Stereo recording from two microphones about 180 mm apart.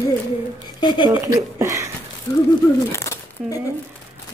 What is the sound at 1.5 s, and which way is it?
Speech, 15° right (ahead or behind).